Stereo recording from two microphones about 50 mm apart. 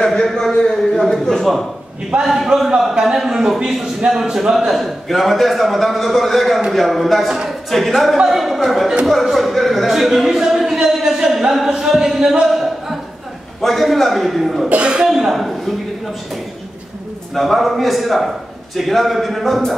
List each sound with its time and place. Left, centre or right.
0.0 s a man's voice: centre
2.2 s a man's voice: centre
11.1 s a sound: centre
13.6 s a man's voice: centre
14.7 s speech: centre
15.0 s a man's voice: centre
17.3 s a man's voice: centre